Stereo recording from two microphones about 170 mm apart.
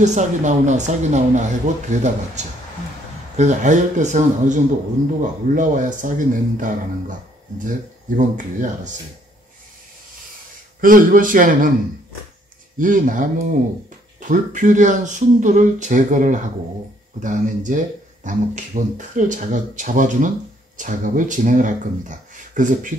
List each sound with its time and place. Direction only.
0.0 s speech: 45° right (ahead or behind)
10.8 s speech: 55° right (ahead or behind)
12.7 s speech: 50° right (ahead or behind)